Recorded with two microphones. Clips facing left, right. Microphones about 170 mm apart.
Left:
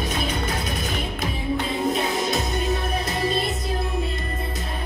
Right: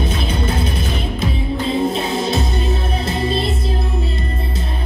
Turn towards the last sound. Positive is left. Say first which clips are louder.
# right 4 dB
turn(degrees=-30)  # may be behind; listen again after turning